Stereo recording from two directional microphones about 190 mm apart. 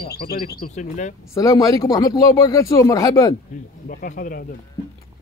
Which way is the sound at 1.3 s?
20° left (ahead or behind).